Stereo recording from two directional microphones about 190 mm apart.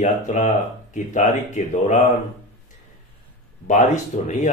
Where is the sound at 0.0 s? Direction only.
40° left (ahead or behind).